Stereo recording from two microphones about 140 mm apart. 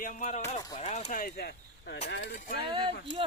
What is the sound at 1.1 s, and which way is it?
Speech, 90° left.